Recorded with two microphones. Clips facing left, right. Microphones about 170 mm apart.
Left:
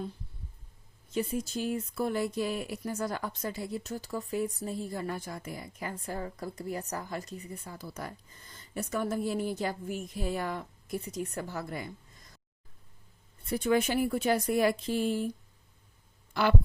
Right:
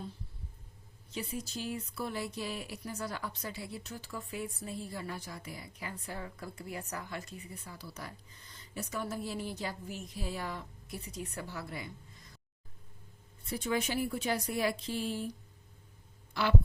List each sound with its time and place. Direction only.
1.1 s speech: 50° left (ahead or behind)
13.5 s speech: 55° left (ahead or behind)
16.3 s a sound: 55° left (ahead or behind)